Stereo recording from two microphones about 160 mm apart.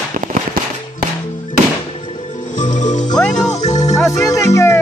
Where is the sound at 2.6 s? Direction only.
50° left (ahead or behind).